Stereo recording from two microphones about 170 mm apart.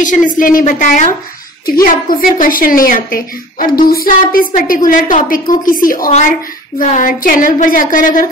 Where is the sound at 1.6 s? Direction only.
60° left (ahead or behind).